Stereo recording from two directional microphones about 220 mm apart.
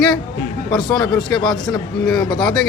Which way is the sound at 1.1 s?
Centre (ahead or behind).